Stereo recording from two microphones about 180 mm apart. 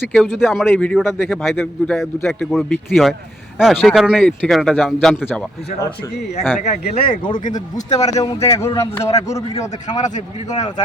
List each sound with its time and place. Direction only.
0.0 s speech: centre (ahead or behind)
7.1 s speech: 30° left (ahead or behind)
7.4 s speech: 45° left (ahead or behind)
7.9 s a man's voice: 20° left (ahead or behind)
10.0 s speech: 40° left (ahead or behind)